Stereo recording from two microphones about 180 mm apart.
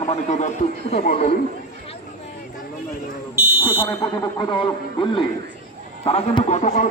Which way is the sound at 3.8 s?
20° left (ahead or behind).